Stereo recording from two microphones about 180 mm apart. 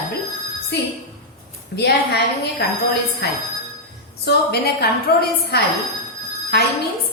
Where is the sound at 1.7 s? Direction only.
70° left (ahead or behind).